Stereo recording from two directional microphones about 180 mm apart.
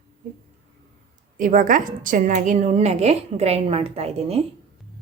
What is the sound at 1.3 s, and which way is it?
A woman's voice, 45° right (ahead or behind).